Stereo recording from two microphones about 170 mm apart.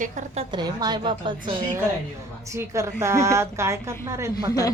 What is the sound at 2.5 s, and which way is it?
Speech, 15° right (ahead or behind).